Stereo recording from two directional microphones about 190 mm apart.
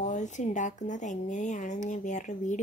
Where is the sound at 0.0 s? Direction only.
40° left (ahead or behind).